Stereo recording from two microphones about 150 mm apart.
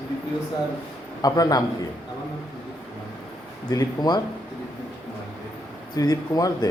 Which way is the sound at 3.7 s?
25° left (ahead or behind).